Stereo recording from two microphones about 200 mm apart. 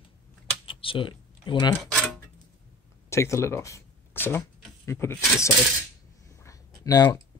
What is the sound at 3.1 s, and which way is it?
Speech, 15° left (ahead or behind).